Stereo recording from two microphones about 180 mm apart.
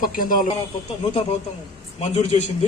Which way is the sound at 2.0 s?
40° left (ahead or behind).